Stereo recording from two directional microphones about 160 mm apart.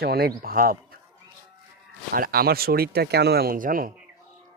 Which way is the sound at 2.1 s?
70° right (ahead or behind).